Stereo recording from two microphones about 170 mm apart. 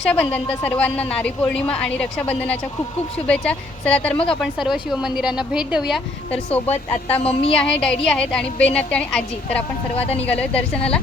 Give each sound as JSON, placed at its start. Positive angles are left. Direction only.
{"t": 0.0, "sound": "a woman's voice", "side_deg": 5}
{"t": 3.2, "sound": "a woman's voice", "side_deg": 5}
{"t": 7.2, "sound": "speech", "side_deg": 35}
{"t": 7.5, "sound": "a woman's voice", "side_deg": 5}
{"t": 9.9, "sound": "speech", "side_deg": 35}
{"t": 10.2, "sound": "a woman's voice", "side_deg": 10}